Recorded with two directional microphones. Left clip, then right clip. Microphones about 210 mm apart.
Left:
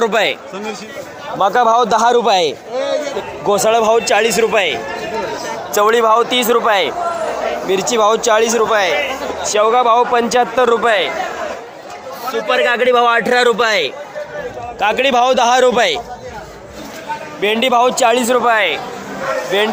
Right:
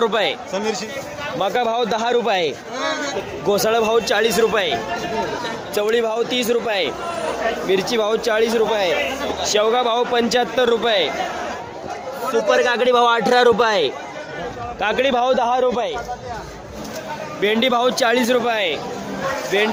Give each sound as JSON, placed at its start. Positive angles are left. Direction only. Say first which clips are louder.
{"t": 0.0, "sound": "a man's voice", "louder": "left 4 dB", "side_deg": 15}
{"t": 1.4, "sound": "a man's voice", "louder": "left 8 dB", "side_deg": 0}
{"t": 3.4, "sound": "a man's voice", "louder": "left 5 dB", "side_deg": 0}
{"t": 12.3, "sound": "a man's voice", "louder": "left 2 dB", "side_deg": 0}
{"t": 17.4, "sound": "a man's voice", "louder": "left 4 dB", "side_deg": 0}